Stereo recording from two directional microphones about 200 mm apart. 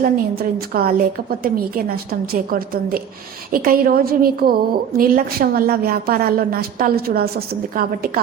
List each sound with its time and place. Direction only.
0.0 s a woman's voice: 50° right (ahead or behind)